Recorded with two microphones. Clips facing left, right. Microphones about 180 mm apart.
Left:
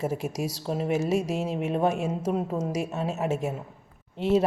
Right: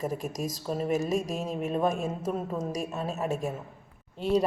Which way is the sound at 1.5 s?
80° left.